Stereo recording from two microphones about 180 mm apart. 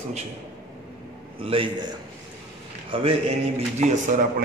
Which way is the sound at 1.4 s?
30° right (ahead or behind).